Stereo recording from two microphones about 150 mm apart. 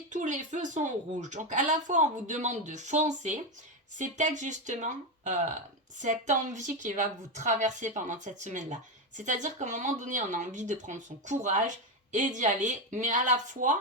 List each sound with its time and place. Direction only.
0.1 s a woman's voice: 55° right (ahead or behind)